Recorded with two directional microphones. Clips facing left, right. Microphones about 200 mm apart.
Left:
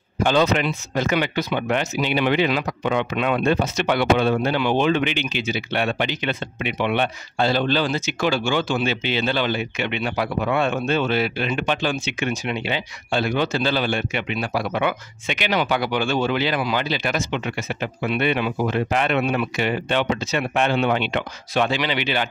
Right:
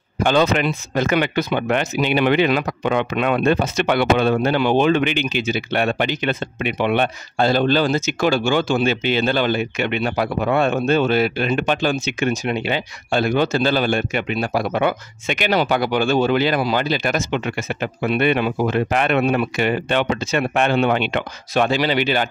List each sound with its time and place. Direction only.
0.2 s speech: 55° right (ahead or behind)